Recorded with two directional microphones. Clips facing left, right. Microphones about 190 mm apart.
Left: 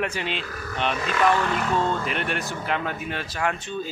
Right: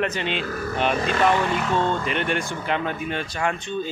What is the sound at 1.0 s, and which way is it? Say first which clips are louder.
Speech: right 3 dB; 35° right (ahead or behind).